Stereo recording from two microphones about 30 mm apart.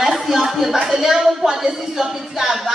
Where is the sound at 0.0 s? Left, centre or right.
Centre.